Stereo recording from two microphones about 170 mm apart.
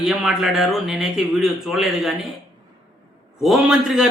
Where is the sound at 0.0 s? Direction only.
Centre (ahead or behind).